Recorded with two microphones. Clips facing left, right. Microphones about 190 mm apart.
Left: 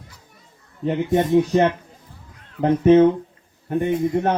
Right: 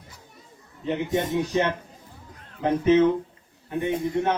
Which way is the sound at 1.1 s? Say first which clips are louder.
Left 8 dB; 45° left (ahead or behind).